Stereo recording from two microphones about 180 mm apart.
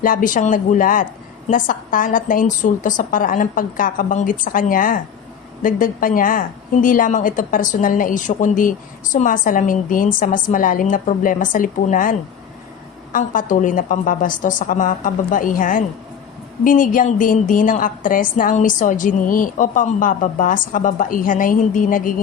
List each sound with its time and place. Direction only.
0.0 s a woman's voice: 50° left (ahead or behind)
13.1 s a woman's voice: 45° left (ahead or behind)